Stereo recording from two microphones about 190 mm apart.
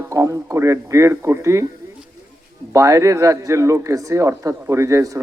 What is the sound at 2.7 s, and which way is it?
Speech, 15° right (ahead or behind).